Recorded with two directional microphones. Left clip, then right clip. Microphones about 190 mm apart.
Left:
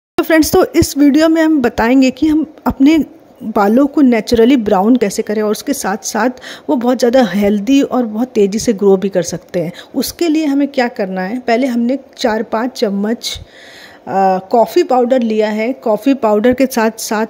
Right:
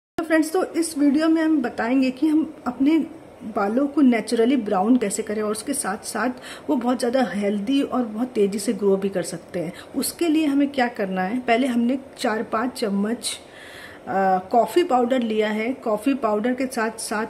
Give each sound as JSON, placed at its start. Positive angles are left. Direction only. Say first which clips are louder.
{"t": 0.2, "sound": "a woman's voice", "louder": "left 10 dB", "side_deg": 45}